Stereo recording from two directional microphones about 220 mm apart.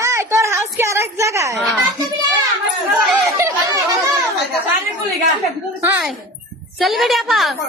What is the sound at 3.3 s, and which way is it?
Speech, 15° right (ahead or behind).